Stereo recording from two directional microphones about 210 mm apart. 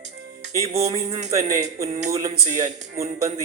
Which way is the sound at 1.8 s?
25° right (ahead or behind).